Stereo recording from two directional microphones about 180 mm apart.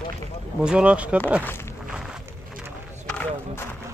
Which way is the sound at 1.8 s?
5° right (ahead or behind).